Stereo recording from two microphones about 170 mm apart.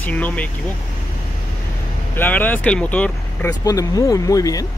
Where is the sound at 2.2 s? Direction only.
10° left (ahead or behind).